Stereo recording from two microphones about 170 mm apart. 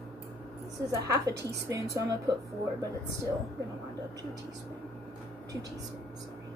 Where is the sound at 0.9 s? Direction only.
20° right (ahead or behind).